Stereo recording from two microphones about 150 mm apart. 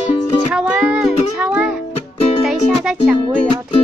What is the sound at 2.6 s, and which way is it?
Music, 5° right (ahead or behind).